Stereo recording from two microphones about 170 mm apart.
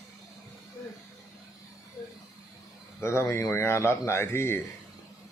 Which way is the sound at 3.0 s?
15° left (ahead or behind).